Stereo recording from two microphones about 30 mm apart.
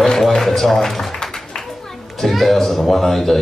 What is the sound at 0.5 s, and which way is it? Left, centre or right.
Speech, centre.